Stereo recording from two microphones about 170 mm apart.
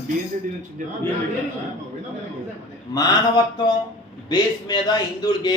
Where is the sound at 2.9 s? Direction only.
25° left (ahead or behind).